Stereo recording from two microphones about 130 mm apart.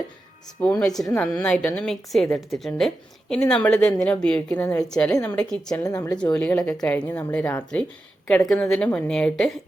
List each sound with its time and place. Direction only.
0.6 s a woman's voice: 10° left (ahead or behind)
5.2 s a woman's voice: 15° left (ahead or behind)
5.5 s a woman's voice: 5° left (ahead or behind)
5.8 s speech: 25° left (ahead or behind)
6.3 s a woman's voice: 10° left (ahead or behind)